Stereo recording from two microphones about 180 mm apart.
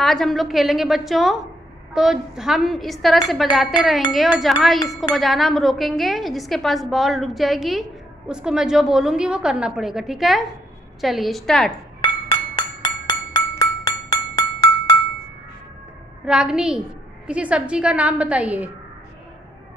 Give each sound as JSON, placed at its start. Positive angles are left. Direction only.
{"t": 0.0, "sound": "speech", "side_deg": 0}
{"t": 12.0, "sound": "chink", "side_deg": 30}
{"t": 13.3, "sound": "glass", "side_deg": 15}
{"t": 16.3, "sound": "a woman's voice", "side_deg": -5}